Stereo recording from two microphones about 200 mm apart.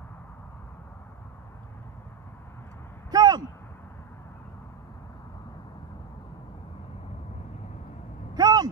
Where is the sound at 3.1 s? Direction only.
20° right (ahead or behind).